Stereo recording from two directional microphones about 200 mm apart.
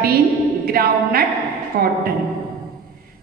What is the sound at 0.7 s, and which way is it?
A woman's voice, 50° right (ahead or behind).